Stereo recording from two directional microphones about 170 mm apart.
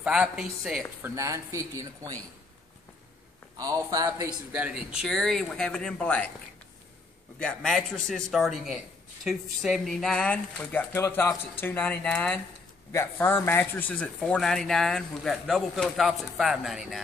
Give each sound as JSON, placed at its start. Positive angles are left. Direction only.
{"t": 0.0, "sound": "speech", "side_deg": -5}
{"t": 1.1, "sound": "speech", "side_deg": -20}
{"t": 3.5, "sound": "speech", "side_deg": -20}
{"t": 4.5, "sound": "speech", "side_deg": -10}
{"t": 7.3, "sound": "speech", "side_deg": 5}